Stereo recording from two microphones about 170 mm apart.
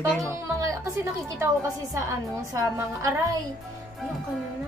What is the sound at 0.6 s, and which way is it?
A woman's voice, 20° right (ahead or behind).